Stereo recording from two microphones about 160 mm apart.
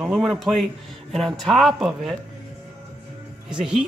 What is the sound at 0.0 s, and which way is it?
Speech, centre (ahead or behind).